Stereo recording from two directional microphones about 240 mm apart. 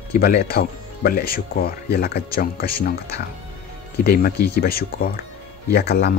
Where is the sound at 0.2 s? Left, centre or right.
Left.